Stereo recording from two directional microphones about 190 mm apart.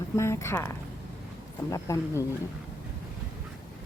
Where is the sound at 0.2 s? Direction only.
15° left (ahead or behind).